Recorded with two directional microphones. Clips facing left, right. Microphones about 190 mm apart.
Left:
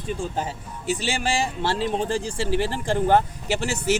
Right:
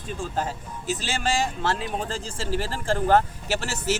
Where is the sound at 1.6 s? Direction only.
30° left (ahead or behind).